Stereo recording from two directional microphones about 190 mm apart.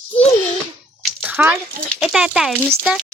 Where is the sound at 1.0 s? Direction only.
5° right (ahead or behind).